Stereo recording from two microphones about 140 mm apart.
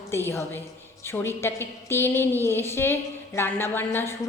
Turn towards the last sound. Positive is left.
turn(degrees=15)  # may be behind; listen again after turning